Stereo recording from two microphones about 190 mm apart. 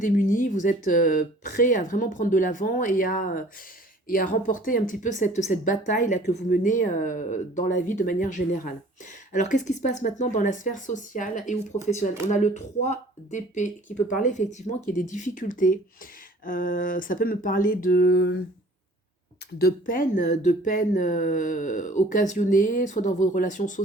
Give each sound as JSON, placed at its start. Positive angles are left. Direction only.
{"t": 0.0, "sound": "a woman's voice", "side_deg": 45}
{"t": 19.5, "sound": "a woman's voice", "side_deg": 50}